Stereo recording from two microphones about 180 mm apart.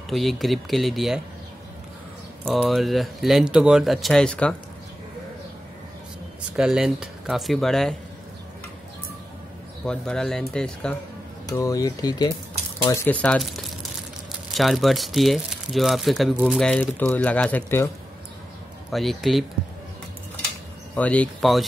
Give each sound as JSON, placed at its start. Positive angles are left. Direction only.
{"t": 0.1, "sound": "speech", "side_deg": 0}
{"t": 2.4, "sound": "speech", "side_deg": 0}
{"t": 6.5, "sound": "speech", "side_deg": -5}
{"t": 9.8, "sound": "speech", "side_deg": 5}
{"t": 11.4, "sound": "speech", "side_deg": 20}
{"t": 18.9, "sound": "speech", "side_deg": 0}
{"t": 20.9, "sound": "speech", "side_deg": 10}